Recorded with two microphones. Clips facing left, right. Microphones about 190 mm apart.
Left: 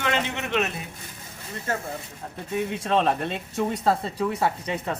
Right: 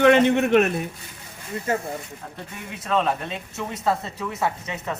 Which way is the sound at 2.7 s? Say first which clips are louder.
Right 1 dB; 30° left (ahead or behind).